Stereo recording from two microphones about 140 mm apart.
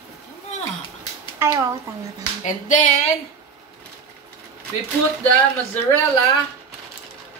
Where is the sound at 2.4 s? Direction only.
65° left (ahead or behind).